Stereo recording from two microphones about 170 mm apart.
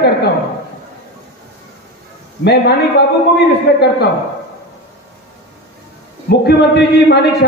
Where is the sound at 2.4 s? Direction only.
75° left (ahead or behind).